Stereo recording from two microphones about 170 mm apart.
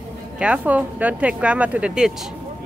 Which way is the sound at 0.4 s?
5° right (ahead or behind).